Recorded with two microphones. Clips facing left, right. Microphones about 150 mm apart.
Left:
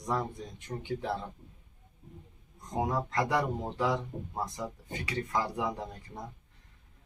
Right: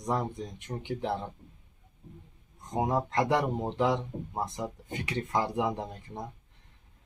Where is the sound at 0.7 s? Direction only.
20° right (ahead or behind).